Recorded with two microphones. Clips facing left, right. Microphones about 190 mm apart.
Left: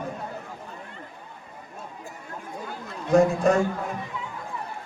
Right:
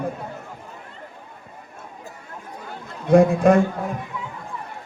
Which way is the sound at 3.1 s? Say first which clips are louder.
Right 5 dB; 55° right (ahead or behind).